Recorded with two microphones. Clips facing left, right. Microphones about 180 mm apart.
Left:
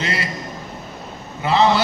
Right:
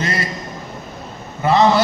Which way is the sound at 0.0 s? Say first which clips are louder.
Right 2 dB; 45° right (ahead or behind).